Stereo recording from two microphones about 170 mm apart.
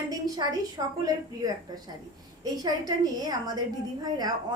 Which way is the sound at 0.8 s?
25° right (ahead or behind).